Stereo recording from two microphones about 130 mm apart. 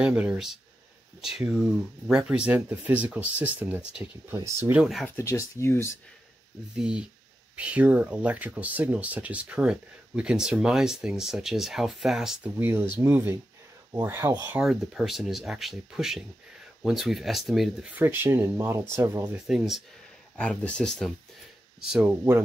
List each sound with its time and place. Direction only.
0.0 s speech: 10° right (ahead or behind)
5.0 s speech: 20° left (ahead or behind)
6.8 s speech: 5° right (ahead or behind)
12.5 s speech: 15° right (ahead or behind)
14.5 s speech: 5° right (ahead or behind)
18.0 s speech: 15° right (ahead or behind)
19.3 s speech: 5° right (ahead or behind)
20.3 s speech: 10° left (ahead or behind)